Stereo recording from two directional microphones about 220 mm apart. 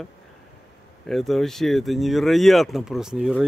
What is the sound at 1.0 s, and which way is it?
Speech, centre (ahead or behind).